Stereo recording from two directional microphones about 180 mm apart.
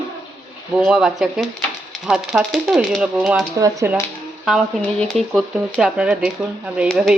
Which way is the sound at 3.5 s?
15° right (ahead or behind).